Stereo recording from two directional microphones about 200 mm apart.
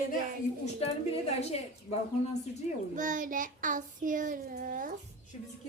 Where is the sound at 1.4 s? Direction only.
30° left (ahead or behind).